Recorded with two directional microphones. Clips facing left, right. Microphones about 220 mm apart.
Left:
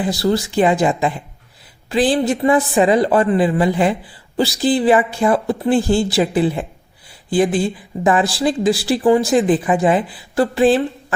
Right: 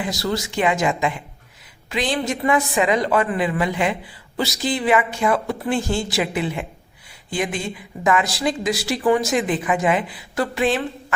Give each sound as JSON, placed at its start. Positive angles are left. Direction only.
{"t": 0.0, "sound": "speech", "side_deg": 35}